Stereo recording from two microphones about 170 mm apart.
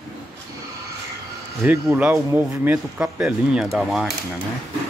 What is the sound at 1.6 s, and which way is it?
Speech, 10° right (ahead or behind).